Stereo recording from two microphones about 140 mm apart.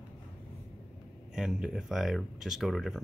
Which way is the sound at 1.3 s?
5° right (ahead or behind).